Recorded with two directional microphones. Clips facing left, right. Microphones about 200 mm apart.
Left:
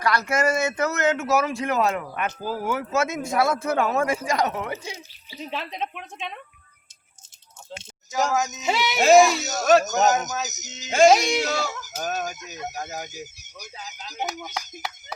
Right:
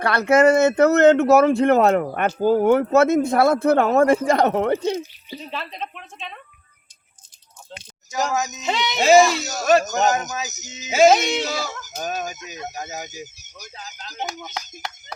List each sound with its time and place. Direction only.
0.0 s speech: 60° right (ahead or behind)
5.4 s speech: 15° left (ahead or behind)
8.1 s speech: centre (ahead or behind)